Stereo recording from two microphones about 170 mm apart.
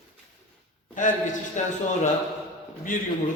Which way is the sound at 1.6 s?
45° left (ahead or behind).